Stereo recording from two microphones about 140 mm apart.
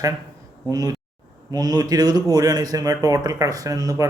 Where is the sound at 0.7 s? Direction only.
25° right (ahead or behind).